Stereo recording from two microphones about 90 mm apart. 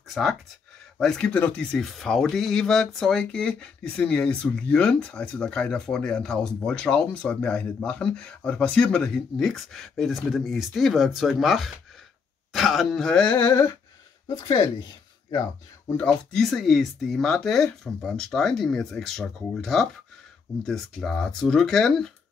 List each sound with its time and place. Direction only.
0.1 s speech: centre (ahead or behind)
1.8 s speech: centre (ahead or behind)
13.4 s a sound: 25° left (ahead or behind)
14.2 s speech: 60° left (ahead or behind)
16.0 s speech: 5° left (ahead or behind)